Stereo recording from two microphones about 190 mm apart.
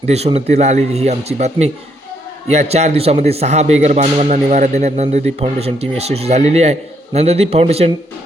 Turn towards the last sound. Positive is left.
turn(degrees=-30)  # may be behind; listen again after turning